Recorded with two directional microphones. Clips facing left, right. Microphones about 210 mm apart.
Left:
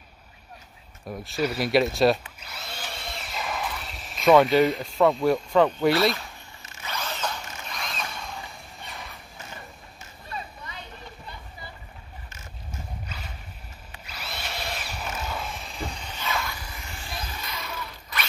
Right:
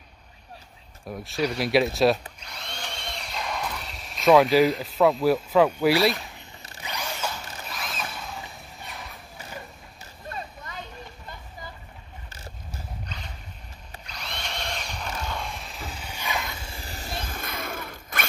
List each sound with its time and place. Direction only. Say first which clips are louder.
1.0 s speech: even; centre (ahead or behind)
2.4 s drill: even; 5° left (ahead or behind)
6.8 s zipper: even; 15° right (ahead or behind)
10.3 s a sound: right 1 dB; 45° right (ahead or behind)
13.0 s boat: even; 5° left (ahead or behind)
14.0 s drill: even; 5° left (ahead or behind); by 18.2 s 50° right (ahead or behind)